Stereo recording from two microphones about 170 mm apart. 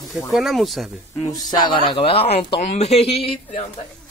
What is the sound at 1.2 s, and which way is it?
Speech, 25° left (ahead or behind).